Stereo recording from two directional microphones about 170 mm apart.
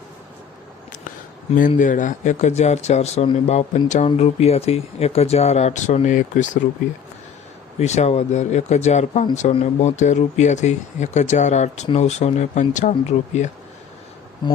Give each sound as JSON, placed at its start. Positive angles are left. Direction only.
{"t": 1.5, "sound": "speech", "side_deg": 50}
{"t": 7.8, "sound": "speech", "side_deg": 40}
{"t": 14.4, "sound": "speech", "side_deg": 25}